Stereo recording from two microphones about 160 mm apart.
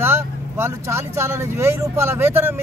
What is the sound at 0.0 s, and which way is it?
Speech, 15° right (ahead or behind).